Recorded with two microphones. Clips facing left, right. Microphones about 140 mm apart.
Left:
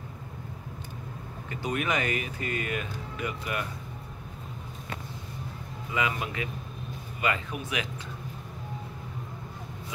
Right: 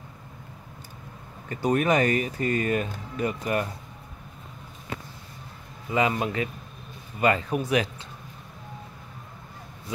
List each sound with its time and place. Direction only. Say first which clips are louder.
1.5 s speech: right 7 dB; 40° right (ahead or behind)
5.9 s speech: right 6 dB; 35° right (ahead or behind)